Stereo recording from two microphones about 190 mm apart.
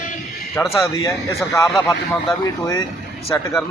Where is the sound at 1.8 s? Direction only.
15° left (ahead or behind).